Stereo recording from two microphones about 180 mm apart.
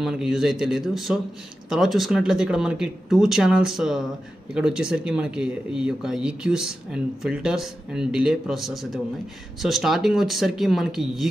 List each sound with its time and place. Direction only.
0.0 s speech: centre (ahead or behind)